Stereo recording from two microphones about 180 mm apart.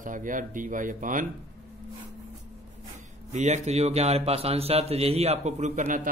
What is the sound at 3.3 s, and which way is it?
Speech, 40° right (ahead or behind).